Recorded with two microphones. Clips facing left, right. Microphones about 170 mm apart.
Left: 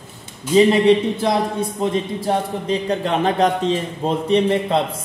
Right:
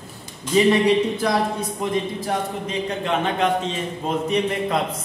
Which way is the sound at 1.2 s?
25° left (ahead or behind).